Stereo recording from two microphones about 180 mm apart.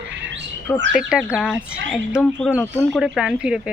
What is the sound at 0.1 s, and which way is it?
Bird, 80° right.